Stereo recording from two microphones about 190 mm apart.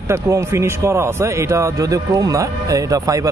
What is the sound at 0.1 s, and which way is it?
A man's voice, 15° right (ahead or behind).